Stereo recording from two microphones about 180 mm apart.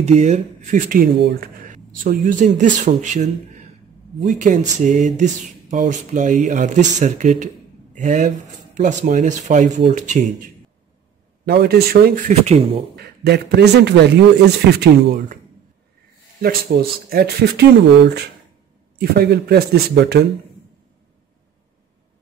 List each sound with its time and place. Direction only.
0.0 s speech: 40° right (ahead or behind)
11.4 s speech: 60° right (ahead or behind); by 12.6 s 40° right (ahead or behind)
12.9 s a man's voice: 65° right (ahead or behind)
16.3 s speech: 55° right (ahead or behind)